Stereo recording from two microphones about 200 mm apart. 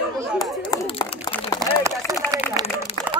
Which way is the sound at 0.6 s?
20° left (ahead or behind).